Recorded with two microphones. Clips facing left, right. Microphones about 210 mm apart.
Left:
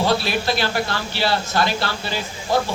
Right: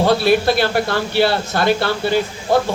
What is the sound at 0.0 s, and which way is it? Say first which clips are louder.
Speech: right 6 dB; 55° right (ahead or behind).